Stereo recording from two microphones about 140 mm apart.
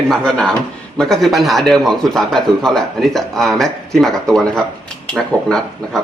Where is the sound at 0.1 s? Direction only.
5° left (ahead or behind).